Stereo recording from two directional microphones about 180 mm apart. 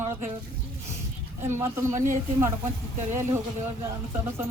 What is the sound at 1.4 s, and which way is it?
Speech, 15° right (ahead or behind).